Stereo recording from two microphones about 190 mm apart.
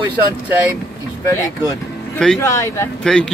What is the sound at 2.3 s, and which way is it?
Speech, 15° left (ahead or behind).